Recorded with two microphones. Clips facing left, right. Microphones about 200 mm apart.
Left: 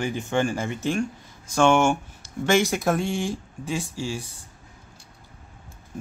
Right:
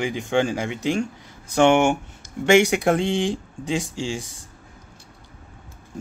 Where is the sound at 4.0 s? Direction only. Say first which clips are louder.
Right 2 dB; 90° right.